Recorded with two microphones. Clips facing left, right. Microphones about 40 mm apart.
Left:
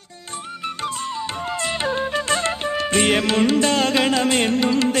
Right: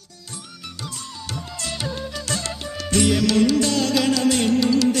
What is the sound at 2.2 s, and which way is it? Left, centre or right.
Music, left.